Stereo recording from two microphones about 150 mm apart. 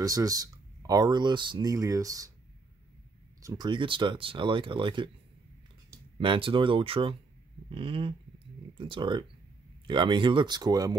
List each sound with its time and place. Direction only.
0.0 s speech: 25° right (ahead or behind)
3.4 s speech: 30° right (ahead or behind)
6.1 s speech: 35° right (ahead or behind)